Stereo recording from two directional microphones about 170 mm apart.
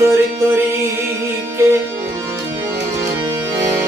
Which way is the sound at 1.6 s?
15° right (ahead or behind).